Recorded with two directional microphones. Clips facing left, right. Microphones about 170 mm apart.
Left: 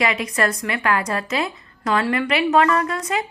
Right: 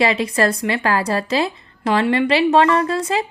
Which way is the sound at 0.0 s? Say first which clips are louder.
Right 4 dB; 30° right (ahead or behind).